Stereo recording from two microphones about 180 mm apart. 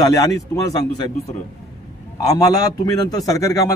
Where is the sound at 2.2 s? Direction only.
20° left (ahead or behind).